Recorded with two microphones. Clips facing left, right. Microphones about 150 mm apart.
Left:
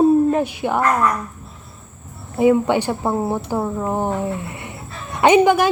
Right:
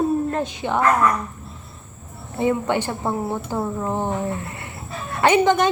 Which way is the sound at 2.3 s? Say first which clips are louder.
Left 6 dB; 10° left (ahead or behind).